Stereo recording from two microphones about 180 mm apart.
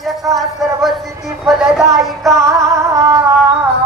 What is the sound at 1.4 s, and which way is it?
Music, 5° right (ahead or behind).